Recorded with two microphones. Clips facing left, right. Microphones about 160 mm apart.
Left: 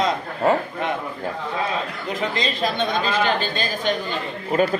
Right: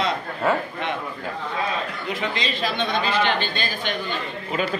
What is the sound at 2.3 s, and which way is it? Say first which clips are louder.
Speech: left 2 dB; 40° left (ahead or behind).